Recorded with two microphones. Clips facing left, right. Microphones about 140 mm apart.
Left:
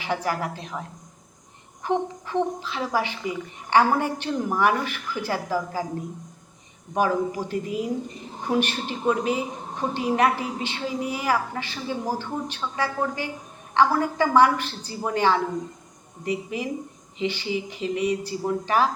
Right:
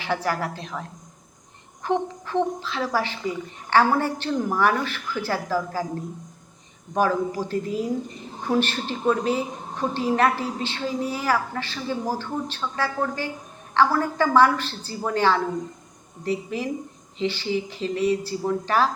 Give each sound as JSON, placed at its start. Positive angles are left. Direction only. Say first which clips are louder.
{"t": 0.0, "sound": "a woman's voice", "louder": "right 1 dB", "side_deg": 15}
{"t": 6.9, "sound": "a woman's voice", "louder": "right 1 dB", "side_deg": 15}